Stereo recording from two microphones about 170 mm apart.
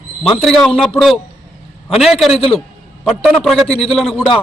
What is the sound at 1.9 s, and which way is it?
A man's voice, centre (ahead or behind).